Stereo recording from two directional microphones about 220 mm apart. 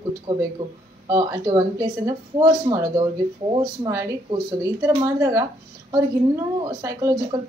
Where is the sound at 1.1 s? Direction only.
15° right (ahead or behind).